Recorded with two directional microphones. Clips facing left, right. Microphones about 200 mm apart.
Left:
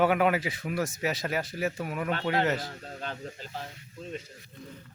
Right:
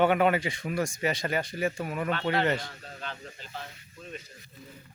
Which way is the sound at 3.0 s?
45° left (ahead or behind).